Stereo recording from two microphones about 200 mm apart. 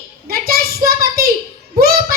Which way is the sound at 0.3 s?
50° right (ahead or behind).